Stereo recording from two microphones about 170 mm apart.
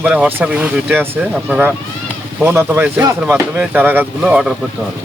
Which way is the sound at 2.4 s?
15° right (ahead or behind).